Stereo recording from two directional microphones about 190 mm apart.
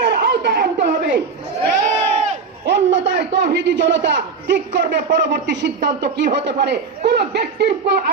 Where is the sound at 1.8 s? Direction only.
40° right (ahead or behind).